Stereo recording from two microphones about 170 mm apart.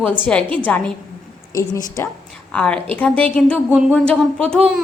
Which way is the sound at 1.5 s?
20° left (ahead or behind).